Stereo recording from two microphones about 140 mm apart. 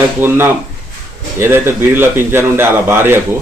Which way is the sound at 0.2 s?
15° right (ahead or behind).